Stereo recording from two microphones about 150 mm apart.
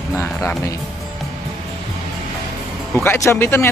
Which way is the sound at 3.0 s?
15° left (ahead or behind).